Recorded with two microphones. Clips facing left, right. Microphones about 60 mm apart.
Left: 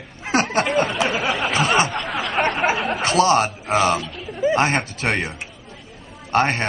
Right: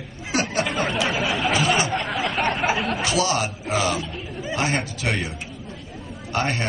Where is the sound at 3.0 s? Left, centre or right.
Left.